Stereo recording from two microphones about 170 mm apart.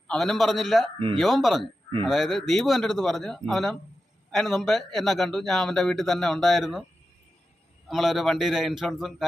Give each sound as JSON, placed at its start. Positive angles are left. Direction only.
{"t": 0.1, "sound": "a man's voice", "side_deg": 0}
{"t": 0.9, "sound": "speech", "side_deg": -30}
{"t": 1.2, "sound": "a man's voice", "side_deg": 0}
{"t": 7.9, "sound": "a man's voice", "side_deg": 0}